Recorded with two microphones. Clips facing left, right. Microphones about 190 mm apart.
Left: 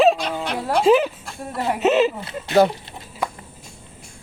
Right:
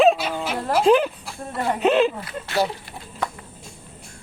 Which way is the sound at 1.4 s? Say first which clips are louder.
Left 1 dB; 5° left (ahead or behind).